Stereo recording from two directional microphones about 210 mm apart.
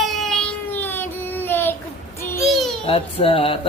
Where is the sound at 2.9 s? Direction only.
25° left (ahead or behind).